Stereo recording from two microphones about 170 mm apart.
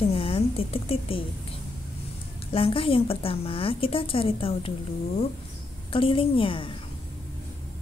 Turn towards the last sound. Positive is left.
turn(degrees=30)  # may be behind; listen again after turning